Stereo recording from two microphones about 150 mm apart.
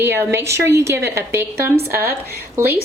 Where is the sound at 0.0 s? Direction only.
15° right (ahead or behind).